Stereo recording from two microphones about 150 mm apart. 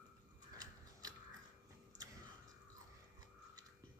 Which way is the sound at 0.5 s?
25° right (ahead or behind).